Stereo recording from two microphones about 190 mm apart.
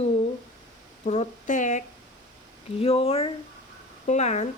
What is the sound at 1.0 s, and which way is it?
Speech, 35° left (ahead or behind).